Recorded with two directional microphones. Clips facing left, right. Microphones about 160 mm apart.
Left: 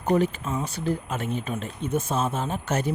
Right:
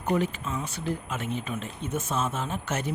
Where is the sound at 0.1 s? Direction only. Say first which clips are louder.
Left 4 dB; 35° left (ahead or behind).